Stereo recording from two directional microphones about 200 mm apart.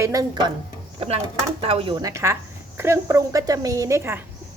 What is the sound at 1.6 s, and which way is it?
A woman's voice, 30° right (ahead or behind).